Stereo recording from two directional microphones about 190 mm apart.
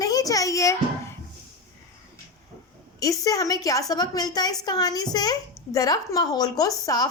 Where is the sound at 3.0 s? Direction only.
15° left (ahead or behind).